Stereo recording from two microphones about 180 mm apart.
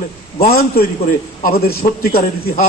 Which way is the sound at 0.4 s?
55° left (ahead or behind).